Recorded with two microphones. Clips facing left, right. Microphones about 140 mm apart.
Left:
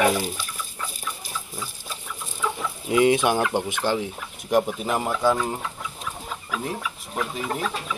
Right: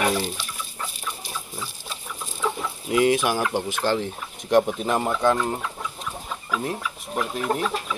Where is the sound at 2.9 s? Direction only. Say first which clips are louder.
Left 1 dB; 20° left (ahead or behind).